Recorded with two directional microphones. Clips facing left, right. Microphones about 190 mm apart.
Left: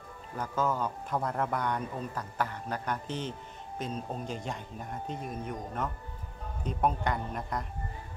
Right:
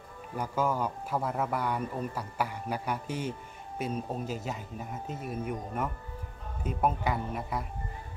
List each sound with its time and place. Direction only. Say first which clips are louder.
0.4 s speech: right 1 dB; 10° right (ahead or behind)